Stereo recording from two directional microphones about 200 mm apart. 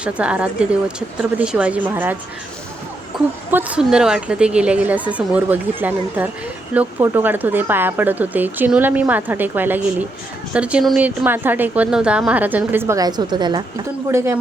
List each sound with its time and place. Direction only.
0.0 s speech: 5° right (ahead or behind)
3.5 s speech: 5° right (ahead or behind)